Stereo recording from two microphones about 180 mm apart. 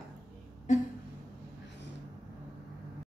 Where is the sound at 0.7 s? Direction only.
40° left (ahead or behind).